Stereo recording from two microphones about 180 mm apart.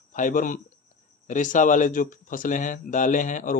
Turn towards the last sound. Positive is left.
turn(degrees=45)  # may be behind; listen again after turning